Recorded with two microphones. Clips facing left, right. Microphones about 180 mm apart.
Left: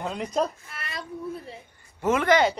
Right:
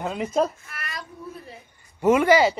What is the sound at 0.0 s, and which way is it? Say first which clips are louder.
Speech: right 3 dB; 5° right (ahead or behind).